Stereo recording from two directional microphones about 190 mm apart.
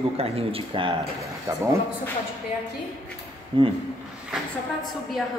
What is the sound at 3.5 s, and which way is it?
Speech, 25° right (ahead or behind).